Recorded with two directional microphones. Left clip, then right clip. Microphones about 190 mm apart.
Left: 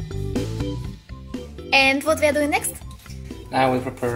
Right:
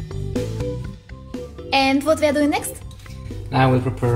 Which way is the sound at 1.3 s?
Centre (ahead or behind).